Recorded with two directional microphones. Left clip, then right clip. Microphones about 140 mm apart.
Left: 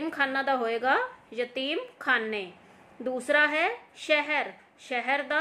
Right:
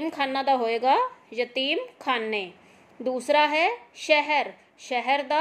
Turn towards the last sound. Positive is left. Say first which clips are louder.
# right 4 dB
turn(degrees=-20)  # may be behind; listen again after turning